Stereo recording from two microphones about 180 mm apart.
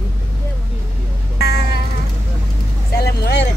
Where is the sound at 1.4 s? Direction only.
65° left (ahead or behind).